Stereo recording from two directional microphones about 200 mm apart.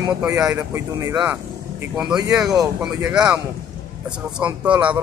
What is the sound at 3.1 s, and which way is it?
Speech, 5° right (ahead or behind).